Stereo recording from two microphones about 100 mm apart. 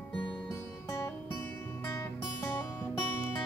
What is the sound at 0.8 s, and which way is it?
Music, 30° left (ahead or behind).